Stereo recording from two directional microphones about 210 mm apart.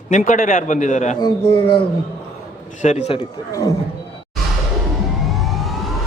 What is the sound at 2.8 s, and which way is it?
Speech, 30° left (ahead or behind).